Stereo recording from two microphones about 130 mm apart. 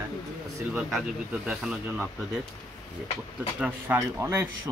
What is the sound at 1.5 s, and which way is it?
Speech, 5° right (ahead or behind).